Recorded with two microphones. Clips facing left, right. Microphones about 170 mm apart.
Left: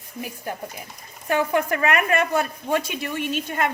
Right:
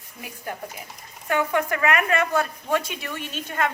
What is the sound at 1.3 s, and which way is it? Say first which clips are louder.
Speech: left 2 dB; 30° left (ahead or behind).